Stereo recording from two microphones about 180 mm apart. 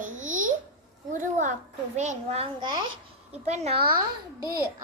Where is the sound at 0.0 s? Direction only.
45° right (ahead or behind).